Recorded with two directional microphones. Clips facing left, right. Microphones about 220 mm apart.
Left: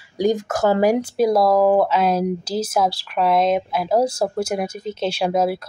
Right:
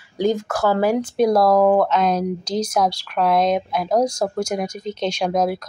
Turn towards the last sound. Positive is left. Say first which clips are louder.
# left 1 dB
turn(degrees=5)  # may be behind; listen again after turning